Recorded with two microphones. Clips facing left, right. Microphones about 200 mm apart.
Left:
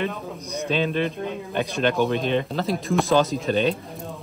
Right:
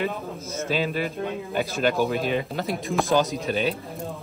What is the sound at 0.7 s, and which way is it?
A man's voice, 5° right (ahead or behind).